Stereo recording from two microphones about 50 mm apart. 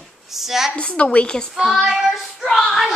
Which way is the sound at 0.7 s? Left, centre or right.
Left.